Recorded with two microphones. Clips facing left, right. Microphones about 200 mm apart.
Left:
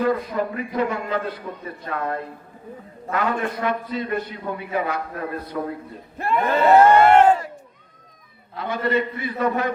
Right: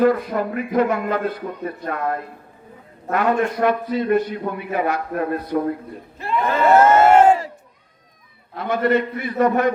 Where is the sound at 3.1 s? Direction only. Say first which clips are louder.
Right 5 dB; 55° right (ahead or behind).